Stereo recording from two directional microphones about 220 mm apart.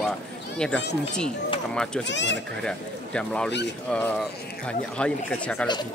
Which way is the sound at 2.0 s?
55° left (ahead or behind).